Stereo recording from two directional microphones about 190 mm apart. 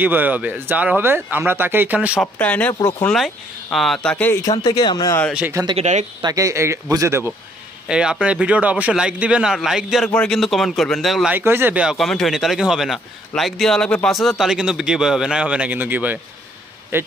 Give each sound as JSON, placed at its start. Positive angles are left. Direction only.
{"t": 0.0, "sound": "speech", "side_deg": -10}
{"t": 2.3, "sound": "speech", "side_deg": 5}
{"t": 5.3, "sound": "speech", "side_deg": -10}
{"t": 5.8, "sound": "speech", "side_deg": -40}
{"t": 6.2, "sound": "speech", "side_deg": -15}
{"t": 7.9, "sound": "speech", "side_deg": -5}
{"t": 11.3, "sound": "speech", "side_deg": -10}